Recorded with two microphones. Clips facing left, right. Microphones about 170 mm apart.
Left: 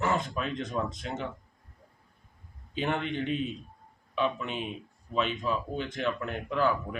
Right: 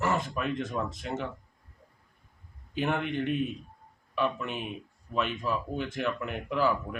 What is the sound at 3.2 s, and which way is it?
Speech, 55° right (ahead or behind).